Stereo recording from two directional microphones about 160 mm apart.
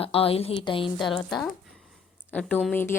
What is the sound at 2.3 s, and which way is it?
Speech, 10° left (ahead or behind).